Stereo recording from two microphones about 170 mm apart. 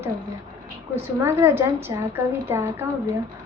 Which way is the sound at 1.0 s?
15° right (ahead or behind).